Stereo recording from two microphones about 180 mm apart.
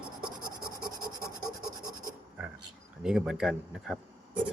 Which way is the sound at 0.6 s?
55° right (ahead or behind).